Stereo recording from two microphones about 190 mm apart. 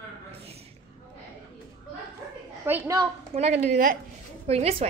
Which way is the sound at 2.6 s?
10° right (ahead or behind).